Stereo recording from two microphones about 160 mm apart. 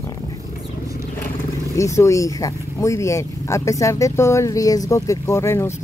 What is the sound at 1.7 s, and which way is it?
Speech, 20° left (ahead or behind).